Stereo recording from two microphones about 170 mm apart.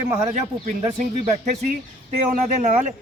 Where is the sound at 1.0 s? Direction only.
45° right (ahead or behind).